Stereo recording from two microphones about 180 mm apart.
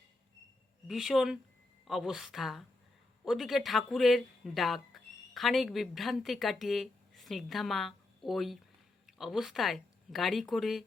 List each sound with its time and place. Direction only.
0.9 s a woman's voice: centre (ahead or behind)